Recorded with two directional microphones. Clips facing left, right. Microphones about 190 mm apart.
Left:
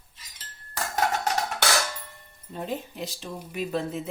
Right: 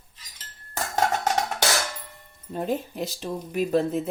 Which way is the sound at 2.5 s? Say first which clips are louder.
Right 5 dB; 45° right (ahead or behind).